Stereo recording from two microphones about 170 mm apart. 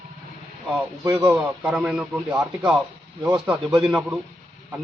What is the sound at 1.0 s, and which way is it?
Speech, 20° right (ahead or behind).